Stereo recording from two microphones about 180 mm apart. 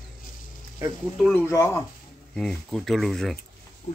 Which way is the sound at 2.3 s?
5° left (ahead or behind).